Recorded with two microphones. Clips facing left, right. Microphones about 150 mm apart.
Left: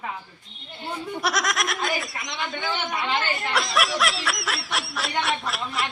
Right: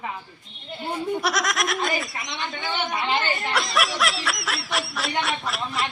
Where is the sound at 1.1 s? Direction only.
Centre (ahead or behind).